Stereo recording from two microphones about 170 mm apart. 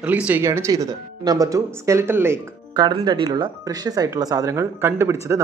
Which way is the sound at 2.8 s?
25° right (ahead or behind).